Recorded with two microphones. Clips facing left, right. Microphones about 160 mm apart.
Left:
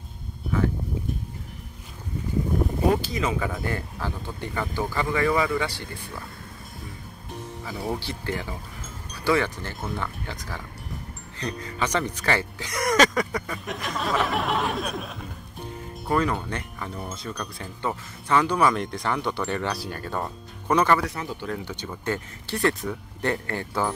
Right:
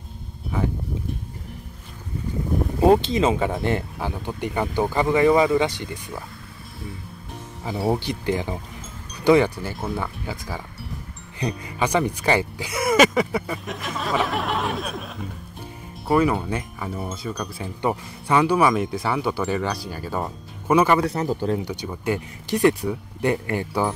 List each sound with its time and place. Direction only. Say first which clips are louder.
0.5 s speech: left 1 dB; 15° right (ahead or behind)
2.9 s speech: right 7 dB; 25° right (ahead or behind)
7.7 s speech: right 7 dB; 35° right (ahead or behind)
8.0 s speech: right 6 dB; 15° right (ahead or behind)
21.0 s speech: right 8 dB; 35° right (ahead or behind)
21.5 s speech: right 5 dB; 15° right (ahead or behind)